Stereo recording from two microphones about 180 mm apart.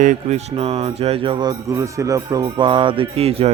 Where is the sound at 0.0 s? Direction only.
40° right (ahead or behind).